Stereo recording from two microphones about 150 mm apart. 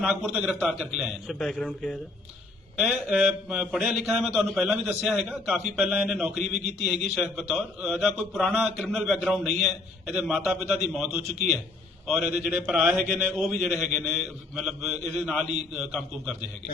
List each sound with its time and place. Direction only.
0.0 s a man's voice: 5° right (ahead or behind)
2.7 s a man's voice: 5° right (ahead or behind)